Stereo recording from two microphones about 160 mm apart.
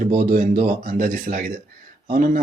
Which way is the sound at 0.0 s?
60° right (ahead or behind).